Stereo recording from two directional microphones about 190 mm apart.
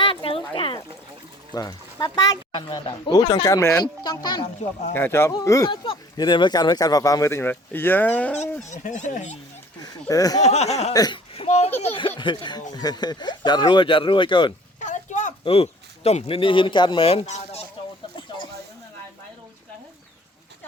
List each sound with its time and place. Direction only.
0.0 s a sound: 30° left (ahead or behind)
1.5 s speech: 20° left (ahead or behind)
4.9 s speech: 10° left (ahead or behind)
8.6 s speech: 40° left (ahead or behind)
9.8 s speech: 20° left (ahead or behind)
10.4 s speech: 35° left (ahead or behind)
10.9 s speech: 20° left (ahead or behind)
11.3 s a sound: 35° left (ahead or behind)
11.8 s speech: 30° left (ahead or behind)
14.8 s speech: 40° left (ahead or behind)